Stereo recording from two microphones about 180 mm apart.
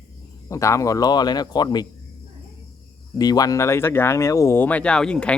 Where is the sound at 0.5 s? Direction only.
15° left (ahead or behind).